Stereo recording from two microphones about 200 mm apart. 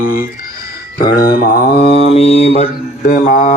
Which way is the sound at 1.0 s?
45° left (ahead or behind).